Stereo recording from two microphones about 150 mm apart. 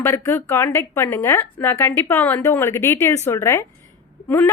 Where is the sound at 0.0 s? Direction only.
15° left (ahead or behind).